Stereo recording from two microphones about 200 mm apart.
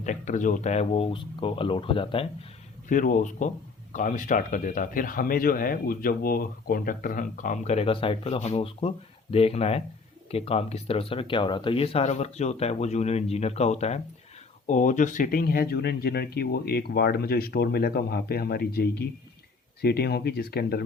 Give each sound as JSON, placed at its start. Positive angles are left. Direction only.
{"t": 0.0, "sound": "speech", "side_deg": 35}
{"t": 2.9, "sound": "speech", "side_deg": 40}